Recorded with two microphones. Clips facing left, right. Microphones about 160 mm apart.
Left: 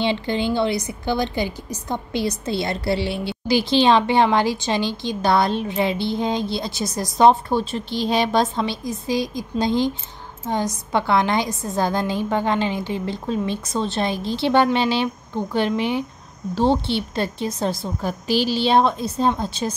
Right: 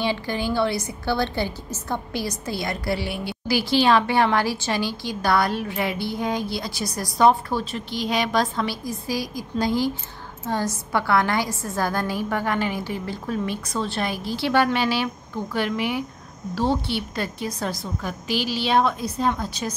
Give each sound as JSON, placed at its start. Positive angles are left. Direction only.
{"t": 0.0, "sound": "a woman's voice", "side_deg": 25}